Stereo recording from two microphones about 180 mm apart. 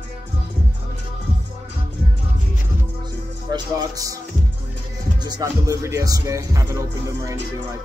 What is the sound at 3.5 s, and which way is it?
Speech, 20° right (ahead or behind).